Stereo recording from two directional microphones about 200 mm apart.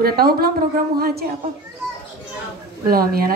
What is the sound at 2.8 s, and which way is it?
Speech, 50° right (ahead or behind).